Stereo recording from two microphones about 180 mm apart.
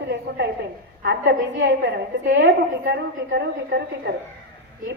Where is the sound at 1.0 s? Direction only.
80° right.